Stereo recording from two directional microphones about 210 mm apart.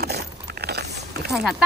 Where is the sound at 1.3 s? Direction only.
Centre (ahead or behind).